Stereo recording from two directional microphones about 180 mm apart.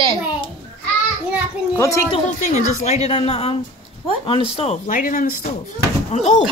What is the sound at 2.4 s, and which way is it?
A child's voice, 40° left (ahead or behind).